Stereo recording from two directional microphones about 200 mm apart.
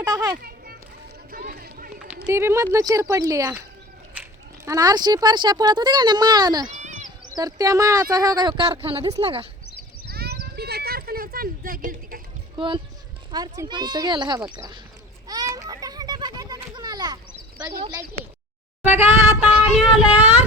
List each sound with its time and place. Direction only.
0.0 s children playing: 20° right (ahead or behind)
0.4 s children playing: 50° right (ahead or behind)
1.3 s a sound: 45° right (ahead or behind)
2.2 s speech: 10° right (ahead or behind)
6.7 s a sound: 35° right (ahead or behind)
7.3 s a child's voice: 20° right (ahead or behind)
10.1 s a sound: 50° right (ahead or behind)
12.5 s a child's voice: 25° right (ahead or behind)
15.3 s children playing: 15° right (ahead or behind)
18.8 s speech: 10° right (ahead or behind)